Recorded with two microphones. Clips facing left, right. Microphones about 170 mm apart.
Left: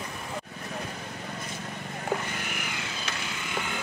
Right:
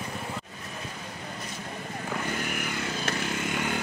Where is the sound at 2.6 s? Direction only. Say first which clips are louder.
Right 5 dB; 50° right (ahead or behind).